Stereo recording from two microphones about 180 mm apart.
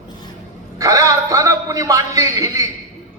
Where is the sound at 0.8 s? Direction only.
20° right (ahead or behind).